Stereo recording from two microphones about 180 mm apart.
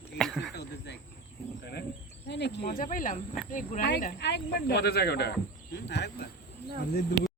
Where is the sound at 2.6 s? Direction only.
50° left (ahead or behind).